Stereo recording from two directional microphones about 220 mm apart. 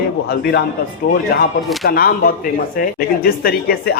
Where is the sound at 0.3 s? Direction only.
45° left (ahead or behind).